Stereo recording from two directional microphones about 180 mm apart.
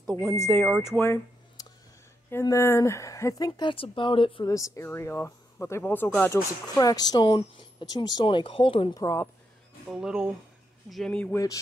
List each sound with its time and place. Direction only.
0.0 s a sound: 5° left (ahead or behind)
0.3 s speech: 15° left (ahead or behind)
0.8 s a sound: 15° left (ahead or behind)
2.3 s speech: 15° left (ahead or behind)
9.0 s speech: 15° left (ahead or behind)
9.8 s speech: 5° right (ahead or behind)